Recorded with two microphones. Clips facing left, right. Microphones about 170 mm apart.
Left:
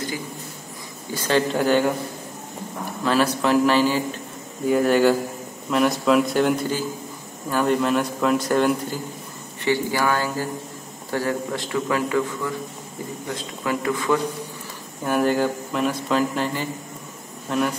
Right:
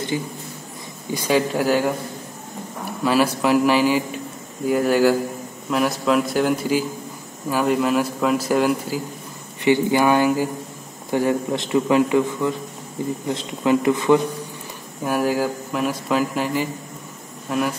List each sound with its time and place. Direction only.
1.1 s a man's voice: 10° right (ahead or behind)
3.0 s a man's voice: 10° right (ahead or behind)
9.7 s a man's voice: 20° right (ahead or behind)
15.0 s a man's voice: 5° right (ahead or behind)